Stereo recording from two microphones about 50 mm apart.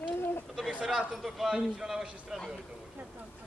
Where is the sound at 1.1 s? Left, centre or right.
Centre.